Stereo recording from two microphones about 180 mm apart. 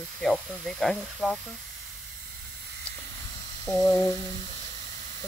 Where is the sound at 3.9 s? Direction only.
20° left (ahead or behind).